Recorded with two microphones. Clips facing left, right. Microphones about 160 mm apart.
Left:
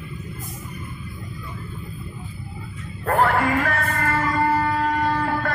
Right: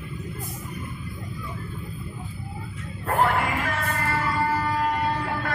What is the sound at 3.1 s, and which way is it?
Music, 45° left (ahead or behind).